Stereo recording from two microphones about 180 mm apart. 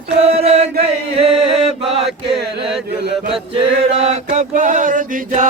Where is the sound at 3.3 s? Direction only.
35° right (ahead or behind).